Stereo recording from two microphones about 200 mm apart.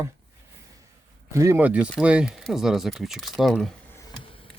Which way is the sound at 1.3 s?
15° right (ahead or behind).